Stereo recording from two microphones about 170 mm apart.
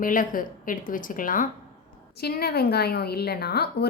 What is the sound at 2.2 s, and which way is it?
A woman's voice, 70° left (ahead or behind).